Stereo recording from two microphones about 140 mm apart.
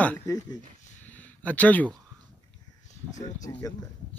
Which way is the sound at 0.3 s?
25° left (ahead or behind).